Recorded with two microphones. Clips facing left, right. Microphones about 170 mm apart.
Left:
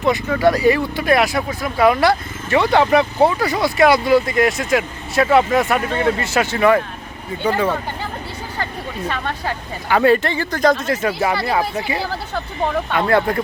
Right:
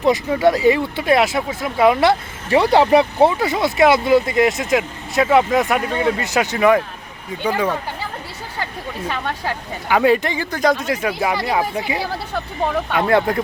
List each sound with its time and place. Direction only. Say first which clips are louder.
0.3 s speech: left 2 dB; 20° right (ahead or behind)
3.2 s speech: even; 20° right (ahead or behind)
9.9 s speech: left 1 dB; 15° right (ahead or behind)